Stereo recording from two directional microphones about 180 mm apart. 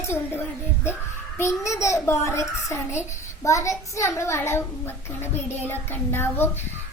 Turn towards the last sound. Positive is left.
turn(degrees=10)  # may be behind; listen again after turning